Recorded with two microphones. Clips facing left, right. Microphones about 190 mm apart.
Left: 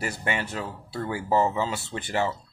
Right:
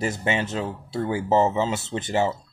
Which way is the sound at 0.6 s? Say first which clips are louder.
Right 5 dB; 10° right (ahead or behind).